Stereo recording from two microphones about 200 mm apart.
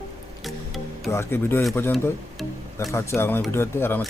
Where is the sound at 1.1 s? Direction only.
10° left (ahead or behind).